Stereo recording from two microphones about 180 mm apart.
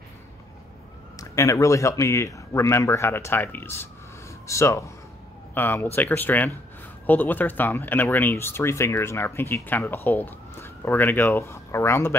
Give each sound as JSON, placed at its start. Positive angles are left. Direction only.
{"t": 1.1, "sound": "speech", "side_deg": 15}